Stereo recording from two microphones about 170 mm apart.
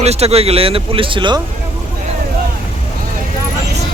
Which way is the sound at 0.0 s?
40° right (ahead or behind).